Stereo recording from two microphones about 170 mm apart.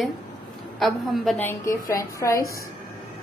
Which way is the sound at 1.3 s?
15° left (ahead or behind).